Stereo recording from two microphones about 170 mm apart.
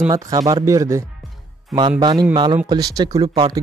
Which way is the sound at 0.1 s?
20° right (ahead or behind).